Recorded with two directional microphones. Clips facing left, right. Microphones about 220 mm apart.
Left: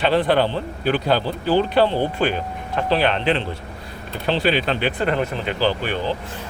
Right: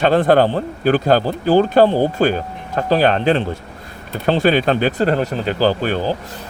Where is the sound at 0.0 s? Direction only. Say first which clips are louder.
Right 5 dB; 45° right (ahead or behind).